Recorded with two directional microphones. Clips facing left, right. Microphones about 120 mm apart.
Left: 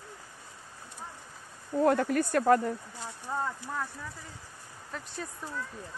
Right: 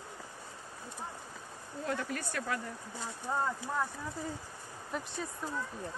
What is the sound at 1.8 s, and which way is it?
Speech, 55° left (ahead or behind).